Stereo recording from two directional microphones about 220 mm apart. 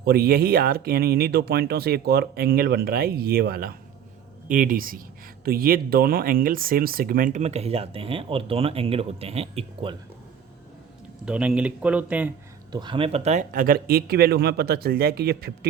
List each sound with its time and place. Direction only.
0.0 s speech: 45° right (ahead or behind); by 9.9 s 25° right (ahead or behind)
11.3 s speech: 5° right (ahead or behind)
12.7 s speech: 20° right (ahead or behind); by 15.5 s 45° right (ahead or behind)